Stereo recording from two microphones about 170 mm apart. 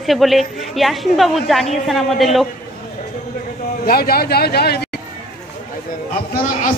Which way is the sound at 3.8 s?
65° left (ahead or behind).